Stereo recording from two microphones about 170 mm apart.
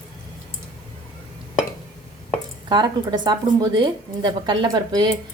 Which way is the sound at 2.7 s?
25° right (ahead or behind).